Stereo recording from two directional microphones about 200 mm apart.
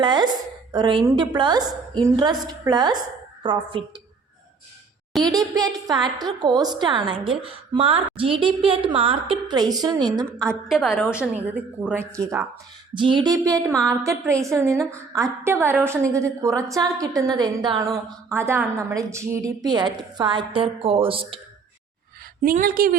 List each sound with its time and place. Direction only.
0.0 s a woman's voice: 20° right (ahead or behind)
5.2 s a woman's voice: 20° right (ahead or behind)
10.7 s a woman's voice: centre (ahead or behind)
12.9 s a woman's voice: 25° right (ahead or behind)
22.4 s a woman's voice: 45° right (ahead or behind)